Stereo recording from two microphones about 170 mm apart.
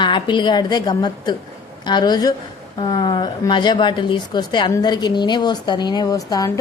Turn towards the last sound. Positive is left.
turn(degrees=20)  # may be behind; listen again after turning